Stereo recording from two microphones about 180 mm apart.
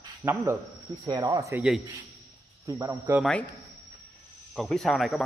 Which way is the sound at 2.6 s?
15° right (ahead or behind).